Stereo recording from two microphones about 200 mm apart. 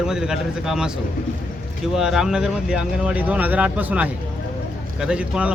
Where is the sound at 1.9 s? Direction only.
Centre (ahead or behind).